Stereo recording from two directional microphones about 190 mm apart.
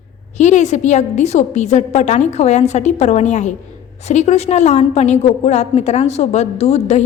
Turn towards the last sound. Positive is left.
turn(degrees=35)  # may be behind; listen again after turning